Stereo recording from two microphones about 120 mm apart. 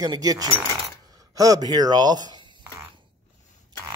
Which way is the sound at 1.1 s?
30° right (ahead or behind).